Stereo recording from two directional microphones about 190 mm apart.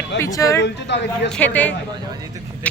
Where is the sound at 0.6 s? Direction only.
65° left (ahead or behind).